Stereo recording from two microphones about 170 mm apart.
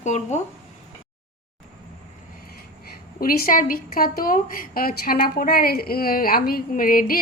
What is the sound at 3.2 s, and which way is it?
A woman's voice, 55° left (ahead or behind).